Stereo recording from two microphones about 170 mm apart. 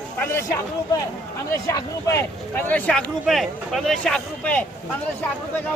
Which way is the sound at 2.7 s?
5° left (ahead or behind).